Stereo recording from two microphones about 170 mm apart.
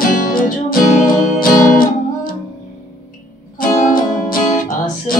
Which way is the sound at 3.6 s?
55° left (ahead or behind).